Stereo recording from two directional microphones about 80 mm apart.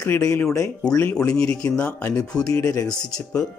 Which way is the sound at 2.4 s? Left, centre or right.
Left.